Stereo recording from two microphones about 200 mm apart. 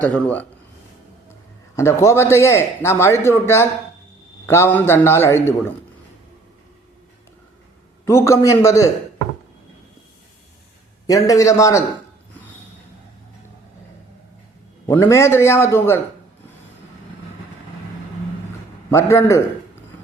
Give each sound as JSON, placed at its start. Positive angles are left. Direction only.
{"t": 0.0, "sound": "speech", "side_deg": 5}
{"t": 1.7, "sound": "speech", "side_deg": 15}
{"t": 8.0, "sound": "speech", "side_deg": 15}
{"t": 11.0, "sound": "speech", "side_deg": 15}
{"t": 14.8, "sound": "speech", "side_deg": 15}
{"t": 18.9, "sound": "speech", "side_deg": 15}